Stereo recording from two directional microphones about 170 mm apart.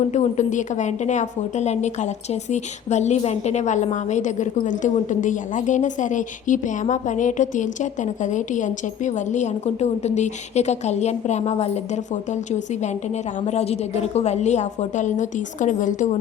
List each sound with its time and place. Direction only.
0.1 s a woman's voice: 45° left (ahead or behind)